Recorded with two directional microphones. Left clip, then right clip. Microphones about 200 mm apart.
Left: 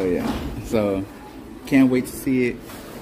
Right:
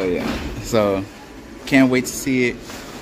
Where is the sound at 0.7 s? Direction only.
5° right (ahead or behind).